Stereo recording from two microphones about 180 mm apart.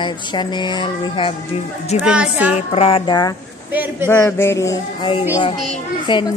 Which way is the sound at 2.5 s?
35° left (ahead or behind).